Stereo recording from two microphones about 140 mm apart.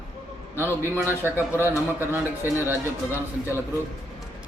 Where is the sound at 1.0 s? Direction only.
15° right (ahead or behind).